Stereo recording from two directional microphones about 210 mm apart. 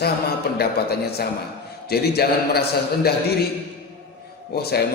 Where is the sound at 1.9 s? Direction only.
50° left (ahead or behind).